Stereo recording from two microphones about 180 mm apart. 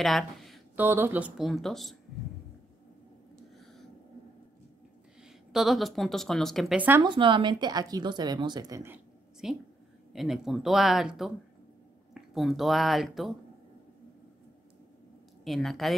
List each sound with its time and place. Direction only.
0.0 s speech: centre (ahead or behind)
0.7 s a woman's voice: 10° right (ahead or behind)
5.5 s a woman's voice: centre (ahead or behind)
7.0 s a woman's voice: 25° right (ahead or behind); by 13.4 s centre (ahead or behind)
15.4 s a woman's voice: centre (ahead or behind)